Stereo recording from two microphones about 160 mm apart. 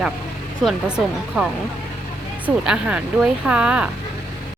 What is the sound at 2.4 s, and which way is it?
Speech, 5° right (ahead or behind).